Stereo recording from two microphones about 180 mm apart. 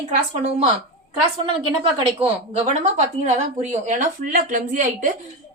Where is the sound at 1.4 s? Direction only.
30° right (ahead or behind).